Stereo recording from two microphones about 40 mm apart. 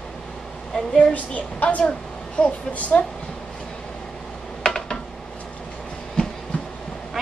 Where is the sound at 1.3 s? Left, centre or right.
Left.